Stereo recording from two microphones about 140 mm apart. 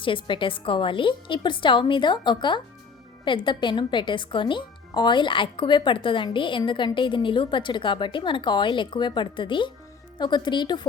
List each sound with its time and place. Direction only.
0.0 s a woman's voice: 35° left (ahead or behind)